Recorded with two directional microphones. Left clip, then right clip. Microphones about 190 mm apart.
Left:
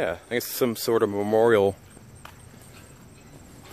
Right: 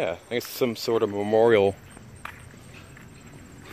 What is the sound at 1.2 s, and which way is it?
Speech, 15° left (ahead or behind).